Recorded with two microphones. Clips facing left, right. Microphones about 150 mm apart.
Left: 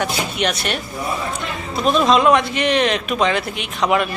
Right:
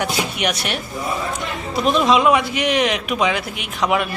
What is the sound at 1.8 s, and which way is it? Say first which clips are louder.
A man's voice: left 1 dB; 10° right (ahead or behind).